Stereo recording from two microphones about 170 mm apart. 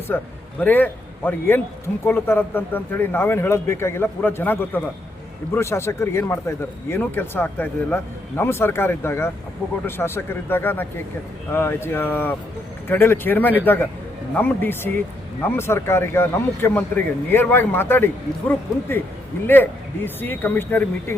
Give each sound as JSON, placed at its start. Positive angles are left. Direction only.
{"t": 0.1, "sound": "a man's voice", "side_deg": 10}
{"t": 20.2, "sound": "a man's voice", "side_deg": 10}